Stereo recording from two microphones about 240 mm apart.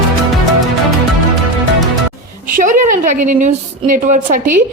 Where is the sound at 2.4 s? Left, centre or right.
Right.